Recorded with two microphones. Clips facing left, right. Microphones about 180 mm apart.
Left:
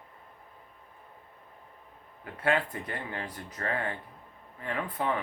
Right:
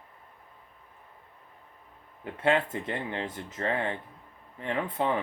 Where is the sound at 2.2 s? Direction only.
25° right (ahead or behind).